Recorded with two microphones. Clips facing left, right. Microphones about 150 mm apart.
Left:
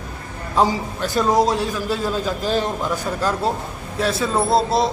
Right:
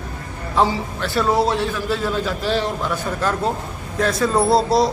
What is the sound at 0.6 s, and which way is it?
A man's voice, 15° left (ahead or behind).